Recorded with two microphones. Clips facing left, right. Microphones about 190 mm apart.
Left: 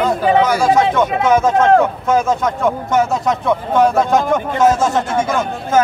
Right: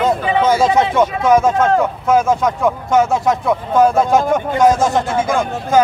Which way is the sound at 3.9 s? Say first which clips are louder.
Right 1 dB; 10° right (ahead or behind).